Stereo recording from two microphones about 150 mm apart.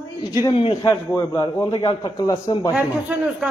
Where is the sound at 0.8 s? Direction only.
20° left (ahead or behind).